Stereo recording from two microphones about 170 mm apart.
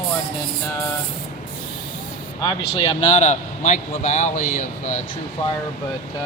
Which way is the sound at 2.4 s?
25° left (ahead or behind).